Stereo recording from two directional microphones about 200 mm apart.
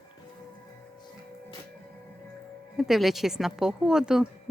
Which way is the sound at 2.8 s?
Centre (ahead or behind).